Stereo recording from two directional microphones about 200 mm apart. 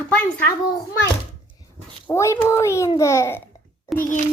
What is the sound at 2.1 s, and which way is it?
A child's voice, 15° left (ahead or behind).